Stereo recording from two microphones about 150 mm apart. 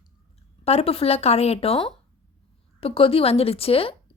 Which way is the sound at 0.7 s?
45° left (ahead or behind).